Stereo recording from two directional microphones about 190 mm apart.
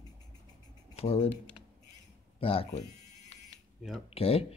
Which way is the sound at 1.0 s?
30° left (ahead or behind).